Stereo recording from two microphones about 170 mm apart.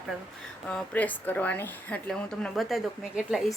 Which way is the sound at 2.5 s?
Centre (ahead or behind).